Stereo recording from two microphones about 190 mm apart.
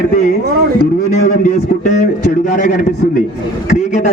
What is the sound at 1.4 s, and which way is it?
A man's voice, 40° left (ahead or behind).